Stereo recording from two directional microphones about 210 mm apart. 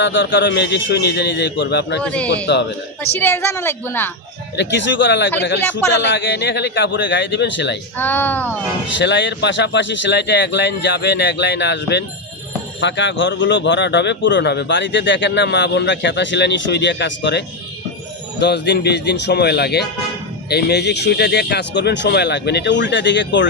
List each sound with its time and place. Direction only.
0.0 s speech: 60° left (ahead or behind)
2.0 s a man's voice: 5° left (ahead or behind)
4.5 s speech: 55° left (ahead or behind)
7.9 s a woman's voice: 10° left (ahead or behind)
9.0 s speech: 60° left (ahead or behind)